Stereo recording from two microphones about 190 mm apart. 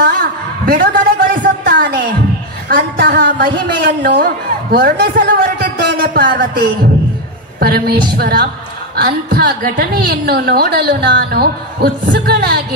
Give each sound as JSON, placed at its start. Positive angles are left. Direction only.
{"t": 0.0, "sound": "a sound", "side_deg": -50}
{"t": 2.7, "sound": "a woman's voice", "side_deg": -55}
{"t": 7.6, "sound": "a woman's voice", "side_deg": -55}